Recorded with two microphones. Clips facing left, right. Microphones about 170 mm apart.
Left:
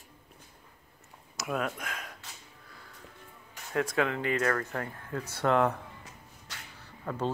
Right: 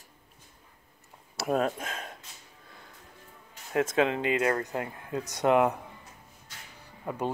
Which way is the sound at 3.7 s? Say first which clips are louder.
Right 3 dB; 20° right (ahead or behind).